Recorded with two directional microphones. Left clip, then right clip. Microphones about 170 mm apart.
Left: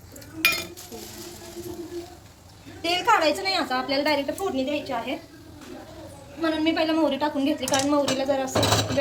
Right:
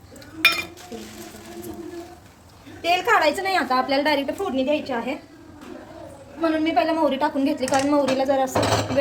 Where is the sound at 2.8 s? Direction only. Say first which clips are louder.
Right 2 dB; 60° right (ahead or behind).